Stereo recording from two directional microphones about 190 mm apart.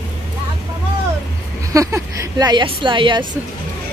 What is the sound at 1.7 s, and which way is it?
A woman's voice, 15° right (ahead or behind).